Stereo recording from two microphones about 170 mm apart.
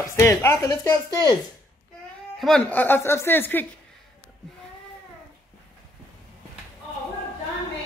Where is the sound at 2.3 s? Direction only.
5° left (ahead or behind).